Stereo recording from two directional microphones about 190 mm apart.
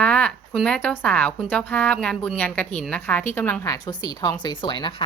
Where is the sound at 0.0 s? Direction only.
5° left (ahead or behind).